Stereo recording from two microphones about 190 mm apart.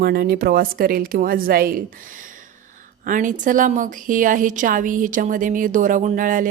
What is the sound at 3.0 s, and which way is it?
A woman's voice, 45° right (ahead or behind).